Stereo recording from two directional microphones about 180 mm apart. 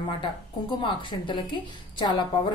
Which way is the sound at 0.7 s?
25° left (ahead or behind).